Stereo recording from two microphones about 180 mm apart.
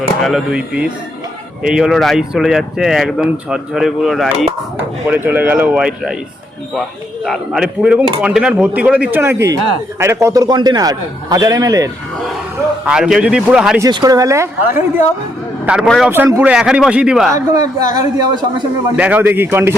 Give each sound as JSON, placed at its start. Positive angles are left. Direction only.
{"t": 0.2, "sound": "speech", "side_deg": 0}
{"t": 7.3, "sound": "a man's voice", "side_deg": -5}
{"t": 12.8, "sound": "speech", "side_deg": -5}
{"t": 13.8, "sound": "speech", "side_deg": -20}
{"t": 17.3, "sound": "a man's voice", "side_deg": -20}
{"t": 18.9, "sound": "speech", "side_deg": -10}